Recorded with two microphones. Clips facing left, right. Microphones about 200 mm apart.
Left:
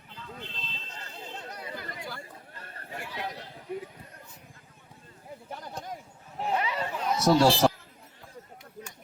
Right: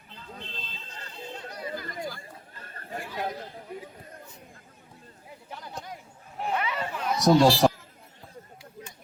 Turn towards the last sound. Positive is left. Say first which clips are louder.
# right 2 dB
turn(degrees=-15)  # may be behind; listen again after turning